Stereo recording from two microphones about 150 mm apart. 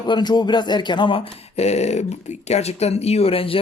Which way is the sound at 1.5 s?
45° left (ahead or behind).